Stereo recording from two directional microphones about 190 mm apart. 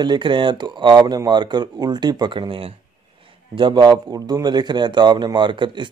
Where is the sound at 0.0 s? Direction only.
25° right (ahead or behind).